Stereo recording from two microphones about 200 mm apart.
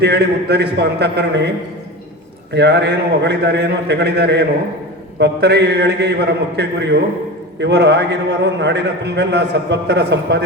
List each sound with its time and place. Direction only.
0.0 s a man's voice: 55° right (ahead or behind)
2.5 s a man's voice: 55° right (ahead or behind)